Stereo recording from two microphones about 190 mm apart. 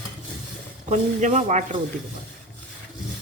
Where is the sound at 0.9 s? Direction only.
40° right (ahead or behind).